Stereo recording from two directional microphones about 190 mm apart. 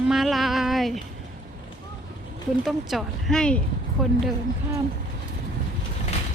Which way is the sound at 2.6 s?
Centre (ahead or behind).